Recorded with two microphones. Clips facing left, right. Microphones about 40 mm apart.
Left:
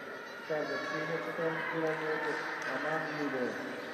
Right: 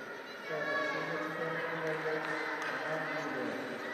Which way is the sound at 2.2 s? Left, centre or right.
Right.